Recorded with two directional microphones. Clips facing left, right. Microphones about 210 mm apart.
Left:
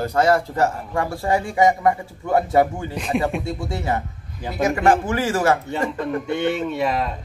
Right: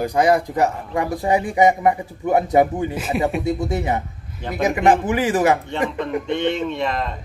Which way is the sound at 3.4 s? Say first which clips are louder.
Right 4 dB; 20° right (ahead or behind).